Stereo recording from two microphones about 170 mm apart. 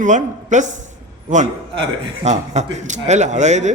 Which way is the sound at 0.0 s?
45° right (ahead or behind).